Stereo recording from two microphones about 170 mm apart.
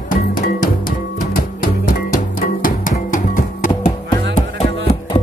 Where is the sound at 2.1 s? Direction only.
55° left (ahead or behind).